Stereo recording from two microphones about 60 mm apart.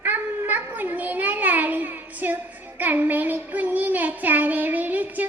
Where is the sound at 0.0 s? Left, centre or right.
Right.